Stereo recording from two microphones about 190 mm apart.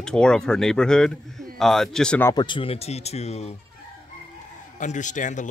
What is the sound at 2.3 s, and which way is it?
Speech, 25° left (ahead or behind).